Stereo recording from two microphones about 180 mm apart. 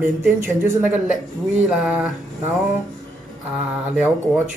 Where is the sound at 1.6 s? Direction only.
5° right (ahead or behind).